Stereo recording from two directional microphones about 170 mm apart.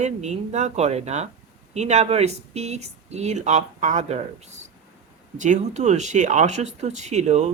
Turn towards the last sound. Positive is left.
turn(degrees=-40)  # may be behind; listen again after turning